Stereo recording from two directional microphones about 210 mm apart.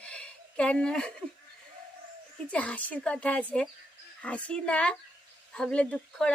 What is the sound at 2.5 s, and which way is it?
Speech, 5° left (ahead or behind).